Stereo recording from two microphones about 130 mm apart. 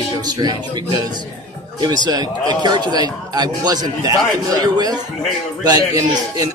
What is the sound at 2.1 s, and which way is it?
A man's voice, 30° right (ahead or behind).